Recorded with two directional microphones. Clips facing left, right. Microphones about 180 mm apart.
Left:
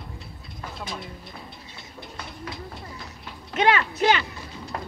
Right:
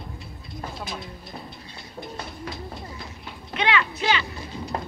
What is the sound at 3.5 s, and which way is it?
Speech, 45° left (ahead or behind).